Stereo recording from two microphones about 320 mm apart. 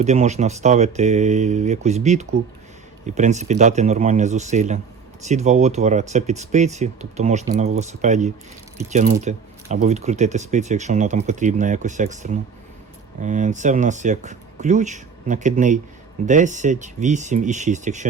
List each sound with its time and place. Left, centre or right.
0.0 s speech: right